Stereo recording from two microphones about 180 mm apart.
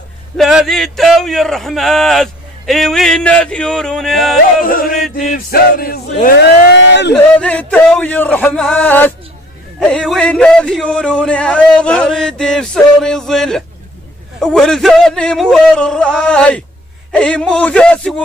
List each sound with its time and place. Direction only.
0.4 s a man's voice: centre (ahead or behind)
4.6 s music: 50° left (ahead or behind)
6.7 s speech: 75° left (ahead or behind)
7.3 s a man's voice: 5° left (ahead or behind)